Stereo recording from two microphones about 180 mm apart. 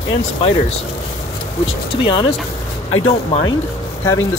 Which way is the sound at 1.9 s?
30° left (ahead or behind).